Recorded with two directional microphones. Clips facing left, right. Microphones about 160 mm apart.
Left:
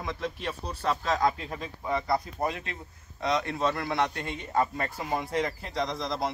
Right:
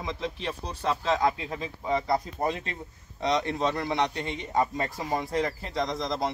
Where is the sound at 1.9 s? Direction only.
20° right (ahead or behind).